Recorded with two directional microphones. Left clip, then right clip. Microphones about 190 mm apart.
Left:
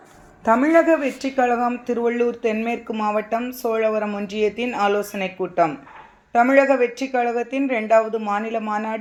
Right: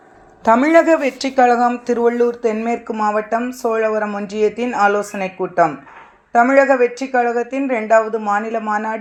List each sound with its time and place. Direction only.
0.4 s a woman's voice: 25° right (ahead or behind)